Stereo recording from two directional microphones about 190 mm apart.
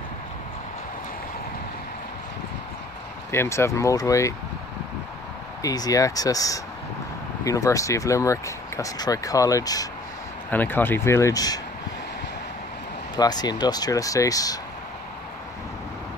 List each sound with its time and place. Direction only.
3.3 s speech: 15° left (ahead or behind)
5.6 s speech: 20° left (ahead or behind)
13.2 s speech: 20° left (ahead or behind)